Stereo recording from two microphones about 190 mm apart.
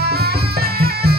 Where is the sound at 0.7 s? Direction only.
55° right (ahead or behind).